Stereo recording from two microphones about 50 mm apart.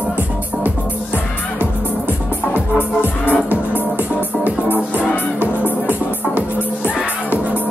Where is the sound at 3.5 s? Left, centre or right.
Right.